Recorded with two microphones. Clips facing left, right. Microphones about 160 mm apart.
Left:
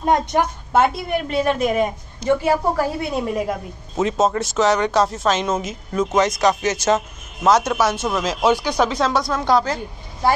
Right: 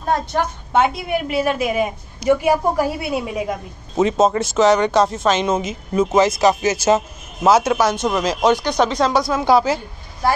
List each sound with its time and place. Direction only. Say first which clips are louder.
0.0 s a woman's voice: left 2 dB; 20° left (ahead or behind)
0.7 s speech: even; centre (ahead or behind)